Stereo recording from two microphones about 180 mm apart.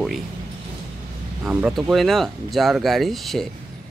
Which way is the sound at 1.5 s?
5° right (ahead or behind).